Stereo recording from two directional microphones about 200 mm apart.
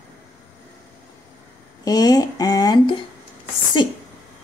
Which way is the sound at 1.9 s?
20° left (ahead or behind).